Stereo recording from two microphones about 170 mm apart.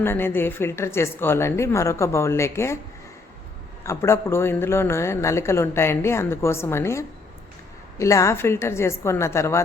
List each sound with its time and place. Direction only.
0.0 s a man's voice: 15° left (ahead or behind)
3.8 s a man's voice: 15° left (ahead or behind)